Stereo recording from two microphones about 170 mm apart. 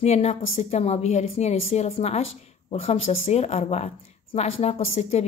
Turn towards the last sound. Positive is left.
turn(degrees=35)  # may be behind; listen again after turning